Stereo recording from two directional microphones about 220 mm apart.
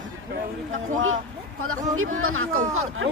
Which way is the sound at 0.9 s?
65° right (ahead or behind).